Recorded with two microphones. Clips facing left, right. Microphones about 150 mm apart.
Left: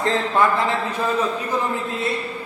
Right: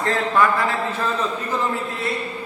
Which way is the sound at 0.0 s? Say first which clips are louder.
Even; 20° left (ahead or behind).